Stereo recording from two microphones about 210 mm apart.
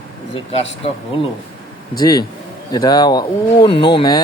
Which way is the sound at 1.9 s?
20° left (ahead or behind).